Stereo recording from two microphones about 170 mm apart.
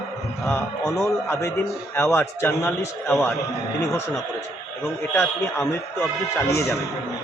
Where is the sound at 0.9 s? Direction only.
20° left (ahead or behind).